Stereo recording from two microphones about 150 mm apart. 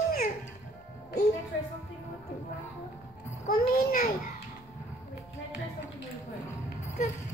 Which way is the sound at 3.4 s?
75° left (ahead or behind).